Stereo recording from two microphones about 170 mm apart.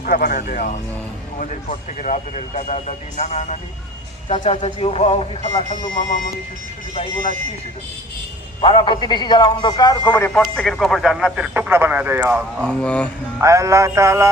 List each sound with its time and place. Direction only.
0.0 s speech: 60° left (ahead or behind); by 5.6 s 40° left (ahead or behind)
8.6 s speech: 30° left (ahead or behind)
10.4 s speech: 5° left (ahead or behind)
12.5 s speech: 5° left (ahead or behind)
13.4 s music: 20° right (ahead or behind)